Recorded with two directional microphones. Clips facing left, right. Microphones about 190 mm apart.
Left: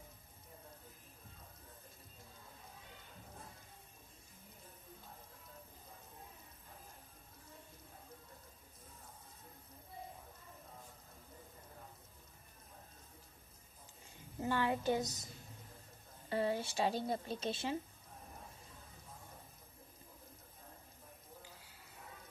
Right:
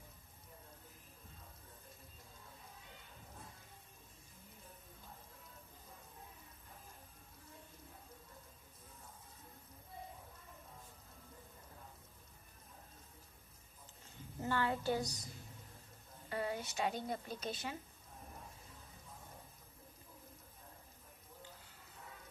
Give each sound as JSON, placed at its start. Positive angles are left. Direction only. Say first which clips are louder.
{"t": 14.4, "sound": "child singing", "louder": "left 2 dB", "side_deg": 15}
{"t": 16.3, "sound": "speech", "louder": "left 4 dB", "side_deg": 30}